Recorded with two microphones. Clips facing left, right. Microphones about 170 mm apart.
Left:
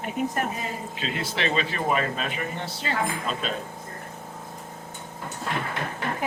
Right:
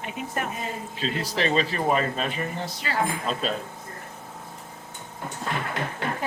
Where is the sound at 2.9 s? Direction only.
25° left (ahead or behind).